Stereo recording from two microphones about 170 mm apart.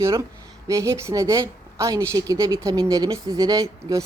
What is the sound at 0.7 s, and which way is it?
Speech, 20° right (ahead or behind).